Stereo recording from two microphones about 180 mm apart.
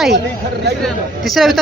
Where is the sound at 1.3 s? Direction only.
Centre (ahead or behind).